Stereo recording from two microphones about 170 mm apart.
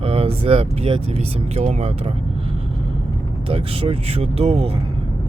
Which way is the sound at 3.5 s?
35° right (ahead or behind).